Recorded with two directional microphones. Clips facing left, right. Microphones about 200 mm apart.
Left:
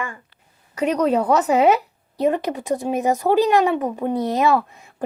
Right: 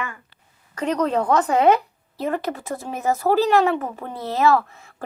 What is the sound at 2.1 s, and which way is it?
A child's voice, 20° left (ahead or behind).